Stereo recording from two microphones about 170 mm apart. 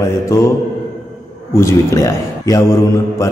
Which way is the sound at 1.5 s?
15° left (ahead or behind).